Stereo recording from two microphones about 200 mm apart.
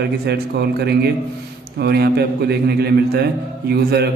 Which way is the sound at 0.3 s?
55° right (ahead or behind).